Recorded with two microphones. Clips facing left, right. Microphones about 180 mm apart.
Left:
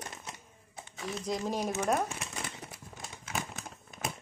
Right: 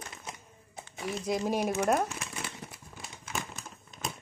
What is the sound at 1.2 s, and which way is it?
Speech, 10° right (ahead or behind).